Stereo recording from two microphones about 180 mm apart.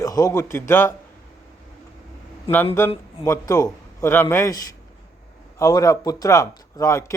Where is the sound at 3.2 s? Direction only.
15° left (ahead or behind).